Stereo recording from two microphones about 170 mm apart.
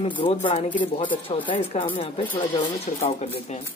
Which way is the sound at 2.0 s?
30° left (ahead or behind).